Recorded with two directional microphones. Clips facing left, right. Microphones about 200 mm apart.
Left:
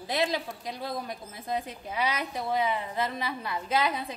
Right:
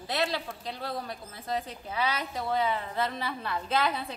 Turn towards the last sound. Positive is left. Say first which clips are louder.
# left 1 dB
turn(degrees=10)  # may be behind; listen again after turning